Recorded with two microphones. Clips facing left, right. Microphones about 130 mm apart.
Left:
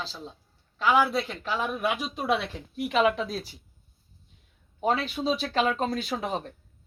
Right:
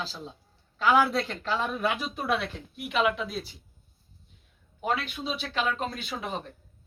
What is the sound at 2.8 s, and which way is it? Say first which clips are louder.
Speech: left 3 dB; 35° left (ahead or behind).